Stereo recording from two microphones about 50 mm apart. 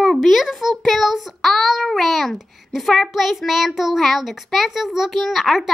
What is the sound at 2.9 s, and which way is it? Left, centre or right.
A child's voice, centre.